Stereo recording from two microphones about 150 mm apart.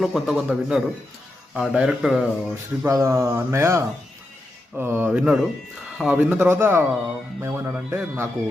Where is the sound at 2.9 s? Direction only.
20° right (ahead or behind).